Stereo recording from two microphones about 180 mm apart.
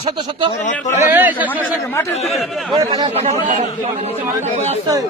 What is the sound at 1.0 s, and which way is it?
Speech, 10° right (ahead or behind).